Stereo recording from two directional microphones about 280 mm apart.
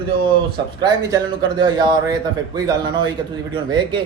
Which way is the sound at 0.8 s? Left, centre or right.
Centre.